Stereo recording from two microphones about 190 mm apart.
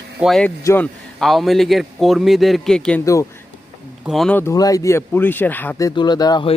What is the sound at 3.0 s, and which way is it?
Speech, 15° left (ahead or behind).